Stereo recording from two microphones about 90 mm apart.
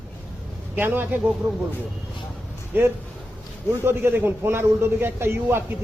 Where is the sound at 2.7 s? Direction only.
25° right (ahead or behind).